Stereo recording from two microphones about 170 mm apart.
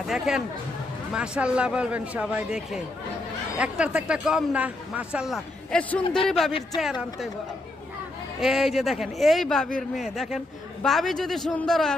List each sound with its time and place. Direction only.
0.1 s a man's voice: 5° right (ahead or behind)
6.0 s a man's voice: 30° left (ahead or behind)
6.2 s a man's voice: centre (ahead or behind)
8.4 s a man's voice: centre (ahead or behind)